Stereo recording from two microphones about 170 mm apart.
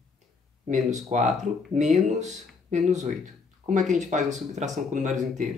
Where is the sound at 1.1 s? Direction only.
40° right (ahead or behind).